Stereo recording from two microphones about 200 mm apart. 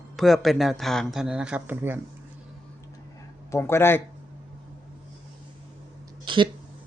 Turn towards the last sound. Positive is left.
turn(degrees=-25)  # may be behind; listen again after turning